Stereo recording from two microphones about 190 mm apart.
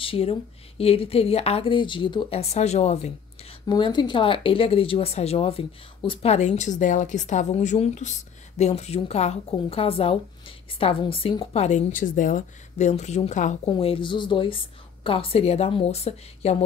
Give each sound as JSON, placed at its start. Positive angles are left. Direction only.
{"t": 0.0, "sound": "speech", "side_deg": 30}
{"t": 3.6, "sound": "speech", "side_deg": 25}
{"t": 13.7, "sound": "a woman's voice", "side_deg": 30}